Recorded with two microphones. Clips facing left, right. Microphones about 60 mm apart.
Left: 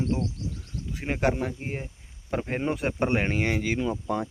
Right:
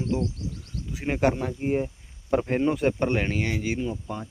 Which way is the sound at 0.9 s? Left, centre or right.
Centre.